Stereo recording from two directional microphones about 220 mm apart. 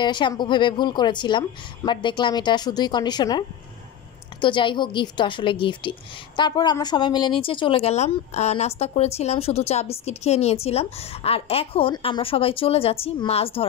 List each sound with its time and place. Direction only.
0.0 s a woman's voice: 20° left (ahead or behind)